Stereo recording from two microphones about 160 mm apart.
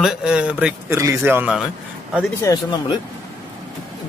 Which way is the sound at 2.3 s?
20° left (ahead or behind).